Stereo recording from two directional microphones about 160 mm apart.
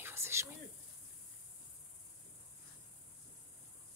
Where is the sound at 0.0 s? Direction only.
15° right (ahead or behind).